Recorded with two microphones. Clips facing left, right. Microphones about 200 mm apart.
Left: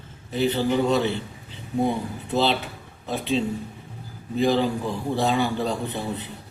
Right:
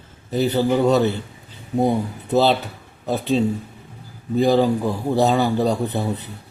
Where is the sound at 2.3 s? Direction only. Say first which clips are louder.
Right 5 dB; 40° right (ahead or behind).